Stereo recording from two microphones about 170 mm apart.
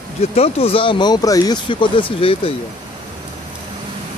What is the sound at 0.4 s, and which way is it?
Speech, 35° left (ahead or behind).